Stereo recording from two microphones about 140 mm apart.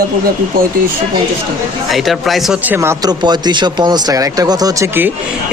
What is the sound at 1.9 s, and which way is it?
Speech, centre (ahead or behind).